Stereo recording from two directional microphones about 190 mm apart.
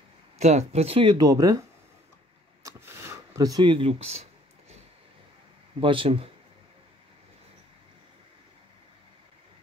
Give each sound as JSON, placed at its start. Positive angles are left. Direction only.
{"t": 0.4, "sound": "speech", "side_deg": -35}
{"t": 2.6, "sound": "a sound", "side_deg": -15}
{"t": 5.8, "sound": "speech", "side_deg": -25}